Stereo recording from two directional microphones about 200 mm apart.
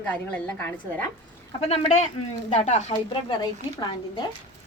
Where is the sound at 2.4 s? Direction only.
35° left (ahead or behind).